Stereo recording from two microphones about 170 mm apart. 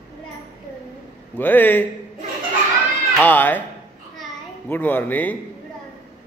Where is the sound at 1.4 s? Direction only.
10° left (ahead or behind).